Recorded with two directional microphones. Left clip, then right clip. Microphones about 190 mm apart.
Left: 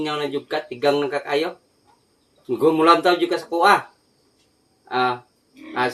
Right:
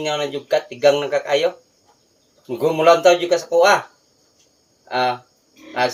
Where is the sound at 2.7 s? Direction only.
20° left (ahead or behind).